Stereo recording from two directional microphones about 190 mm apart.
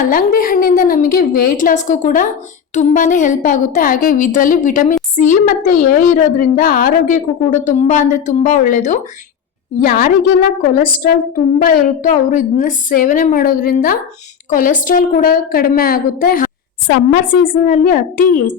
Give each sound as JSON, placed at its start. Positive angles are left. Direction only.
{"t": 0.1, "sound": "a woman's voice", "side_deg": 50}